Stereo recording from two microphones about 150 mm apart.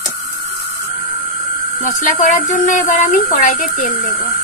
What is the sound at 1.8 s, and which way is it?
Speech, 60° left (ahead or behind).